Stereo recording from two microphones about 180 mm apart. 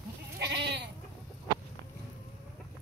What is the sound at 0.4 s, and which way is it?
Goat, 70° right (ahead or behind).